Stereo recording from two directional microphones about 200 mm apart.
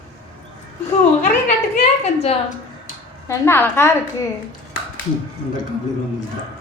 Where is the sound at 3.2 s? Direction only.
10° left (ahead or behind).